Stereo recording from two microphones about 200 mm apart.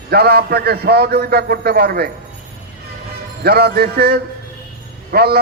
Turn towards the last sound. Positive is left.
turn(degrees=-50)  # may be behind; listen again after turning